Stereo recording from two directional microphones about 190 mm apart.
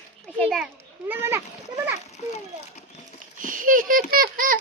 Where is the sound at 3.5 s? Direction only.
45° right (ahead or behind).